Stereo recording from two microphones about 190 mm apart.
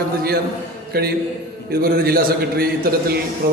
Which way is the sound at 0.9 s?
55° right (ahead or behind).